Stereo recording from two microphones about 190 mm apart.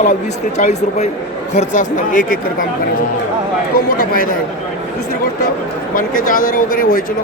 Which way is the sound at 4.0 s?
50° left (ahead or behind).